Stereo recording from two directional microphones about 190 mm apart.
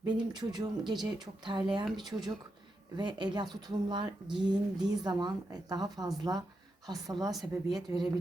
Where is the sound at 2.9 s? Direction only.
25° right (ahead or behind).